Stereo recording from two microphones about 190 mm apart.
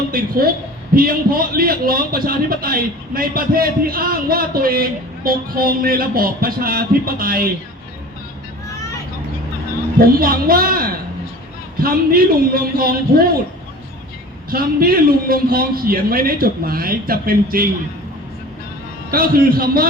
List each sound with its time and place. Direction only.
0.1 s a man's voice: 50° right (ahead or behind)
10.0 s a man's voice: 50° right (ahead or behind)
14.5 s a man's voice: 50° right (ahead or behind)
19.1 s a man's voice: 50° right (ahead or behind)